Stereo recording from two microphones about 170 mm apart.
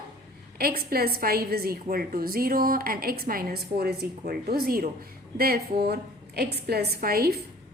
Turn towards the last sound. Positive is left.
turn(degrees=-65)  # may be behind; listen again after turning